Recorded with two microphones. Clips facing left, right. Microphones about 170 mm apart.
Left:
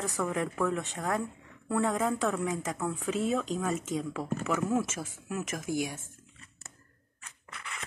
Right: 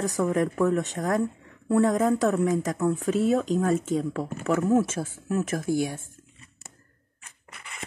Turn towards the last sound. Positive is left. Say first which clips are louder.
# right 7 dB
turn(degrees=-35)  # may be behind; listen again after turning